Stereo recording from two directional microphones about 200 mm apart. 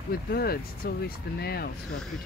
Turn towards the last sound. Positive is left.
turn(degrees=55)  # may be behind; listen again after turning